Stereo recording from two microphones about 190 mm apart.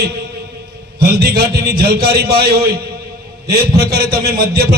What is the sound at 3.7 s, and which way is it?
Speech, 55° right (ahead or behind).